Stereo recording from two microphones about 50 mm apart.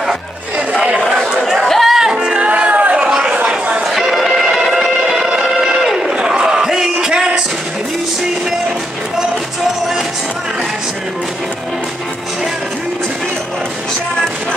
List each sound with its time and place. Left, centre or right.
1.4 s chatter: centre
1.7 s music: centre; by 3.0 s right
3.0 s chatter: centre
3.3 s a sound: right
3.8 s music: centre
5.9 s a sound: centre